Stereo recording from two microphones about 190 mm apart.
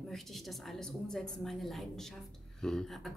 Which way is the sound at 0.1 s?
Centre (ahead or behind).